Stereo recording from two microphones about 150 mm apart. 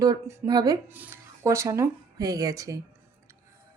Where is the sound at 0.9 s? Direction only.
15° right (ahead or behind).